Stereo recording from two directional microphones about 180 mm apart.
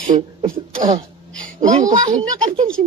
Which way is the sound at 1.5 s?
40° right (ahead or behind).